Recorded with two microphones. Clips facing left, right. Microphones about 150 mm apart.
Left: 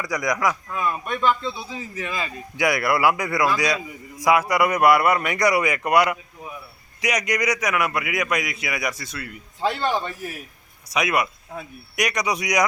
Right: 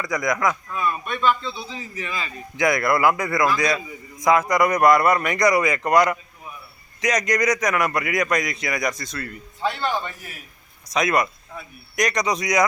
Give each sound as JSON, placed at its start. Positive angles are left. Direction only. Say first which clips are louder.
{"t": 0.0, "sound": "speech", "louder": "right 1 dB", "side_deg": 10}